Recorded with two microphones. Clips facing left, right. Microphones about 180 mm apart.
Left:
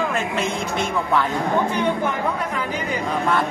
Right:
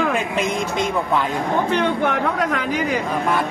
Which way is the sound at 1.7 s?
70° right (ahead or behind).